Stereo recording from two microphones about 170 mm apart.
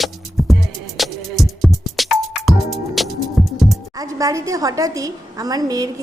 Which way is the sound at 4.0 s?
20° right (ahead or behind).